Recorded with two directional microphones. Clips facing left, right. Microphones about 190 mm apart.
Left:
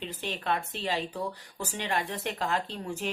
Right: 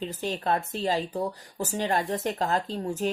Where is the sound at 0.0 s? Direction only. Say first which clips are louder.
Right 5 dB; 40° right (ahead or behind).